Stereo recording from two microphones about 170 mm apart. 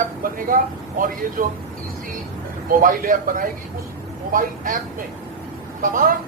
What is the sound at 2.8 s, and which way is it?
Speech, 55° right (ahead or behind).